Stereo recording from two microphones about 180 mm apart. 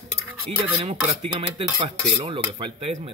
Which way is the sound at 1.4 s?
35° right (ahead or behind).